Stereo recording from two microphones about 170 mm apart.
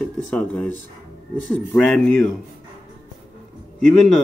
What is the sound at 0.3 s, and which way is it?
Speech, 10° left (ahead or behind).